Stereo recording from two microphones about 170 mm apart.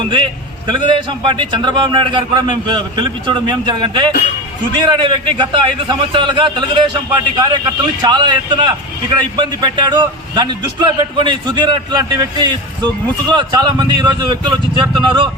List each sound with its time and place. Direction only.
0.0 s a man's voice: 30° right (ahead or behind)